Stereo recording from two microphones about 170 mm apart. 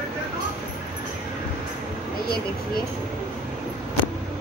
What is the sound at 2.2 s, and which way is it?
Speech, 65° left (ahead or behind).